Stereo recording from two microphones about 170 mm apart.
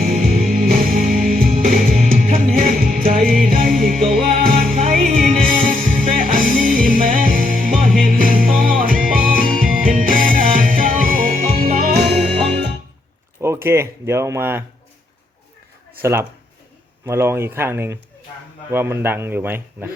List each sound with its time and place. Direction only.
0.1 s music: 55° right (ahead or behind)
12.0 s music: 80° right
13.4 s speech: 15° right (ahead or behind)
16.0 s speech: 15° right (ahead or behind)